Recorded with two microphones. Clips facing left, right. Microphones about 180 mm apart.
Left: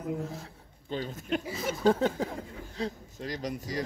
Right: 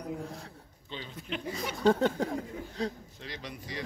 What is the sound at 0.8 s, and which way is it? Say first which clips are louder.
Speech: left 7 dB; 45° left (ahead or behind).